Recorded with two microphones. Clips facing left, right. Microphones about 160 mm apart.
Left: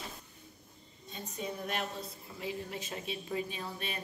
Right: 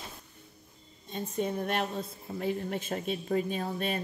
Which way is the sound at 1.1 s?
50° right (ahead or behind).